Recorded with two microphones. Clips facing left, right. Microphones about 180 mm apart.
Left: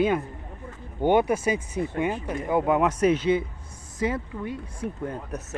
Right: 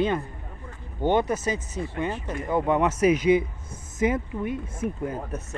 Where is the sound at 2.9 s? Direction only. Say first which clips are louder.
Right 2 dB; 10° right (ahead or behind).